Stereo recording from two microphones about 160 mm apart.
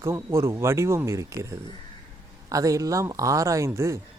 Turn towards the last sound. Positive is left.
turn(degrees=-15)  # may be behind; listen again after turning